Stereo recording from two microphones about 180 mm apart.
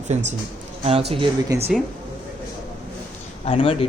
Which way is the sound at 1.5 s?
20° right (ahead or behind).